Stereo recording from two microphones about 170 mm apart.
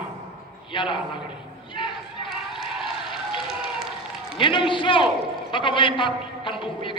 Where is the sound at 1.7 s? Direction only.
30° left (ahead or behind).